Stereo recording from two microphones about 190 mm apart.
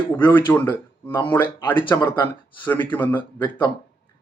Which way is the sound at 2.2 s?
10° left (ahead or behind).